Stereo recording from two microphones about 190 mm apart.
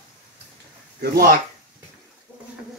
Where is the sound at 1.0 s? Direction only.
50° right (ahead or behind).